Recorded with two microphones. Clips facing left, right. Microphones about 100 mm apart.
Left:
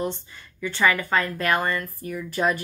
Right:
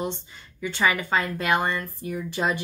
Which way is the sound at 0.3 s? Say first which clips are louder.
Left 1 dB; 15° right (ahead or behind).